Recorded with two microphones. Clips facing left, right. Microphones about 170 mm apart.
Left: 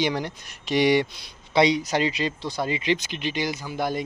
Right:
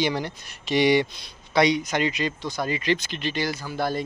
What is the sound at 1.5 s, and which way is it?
Speech, 25° left (ahead or behind).